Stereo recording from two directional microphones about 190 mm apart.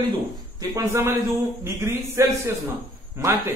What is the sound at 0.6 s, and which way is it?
Speech, 15° right (ahead or behind).